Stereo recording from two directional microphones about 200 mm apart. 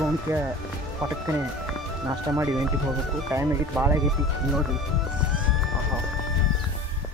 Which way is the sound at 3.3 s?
15° right (ahead or behind).